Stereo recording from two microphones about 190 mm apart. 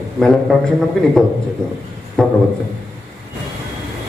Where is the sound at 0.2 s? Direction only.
5° left (ahead or behind).